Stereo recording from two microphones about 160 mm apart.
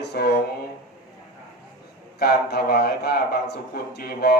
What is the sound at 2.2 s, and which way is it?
A man's voice, 75° left (ahead or behind).